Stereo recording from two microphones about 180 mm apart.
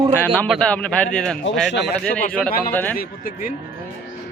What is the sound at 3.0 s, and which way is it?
Speech, 50° left (ahead or behind).